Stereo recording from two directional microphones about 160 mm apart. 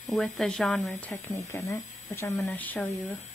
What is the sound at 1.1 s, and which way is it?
Speech, 20° left (ahead or behind).